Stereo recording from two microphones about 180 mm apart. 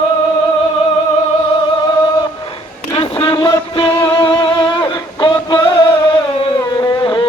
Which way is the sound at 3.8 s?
30° left (ahead or behind).